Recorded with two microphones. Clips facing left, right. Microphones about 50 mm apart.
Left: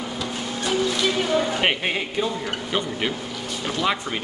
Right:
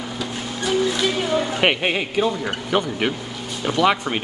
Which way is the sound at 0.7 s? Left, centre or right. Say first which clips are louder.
Right 2 dB; centre.